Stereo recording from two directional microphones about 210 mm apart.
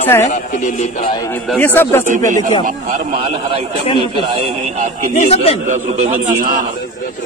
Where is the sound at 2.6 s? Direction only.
40° right (ahead or behind).